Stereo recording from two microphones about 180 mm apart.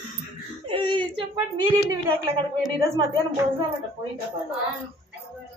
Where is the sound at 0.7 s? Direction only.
25° right (ahead or behind).